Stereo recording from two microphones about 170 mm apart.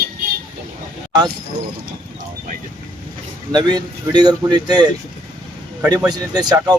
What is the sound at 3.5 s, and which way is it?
Speech, 25° right (ahead or behind).